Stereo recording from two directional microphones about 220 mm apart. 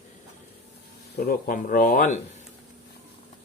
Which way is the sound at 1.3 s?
40° left (ahead or behind).